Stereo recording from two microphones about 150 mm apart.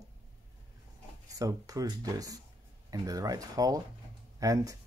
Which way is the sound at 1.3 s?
25° right (ahead or behind).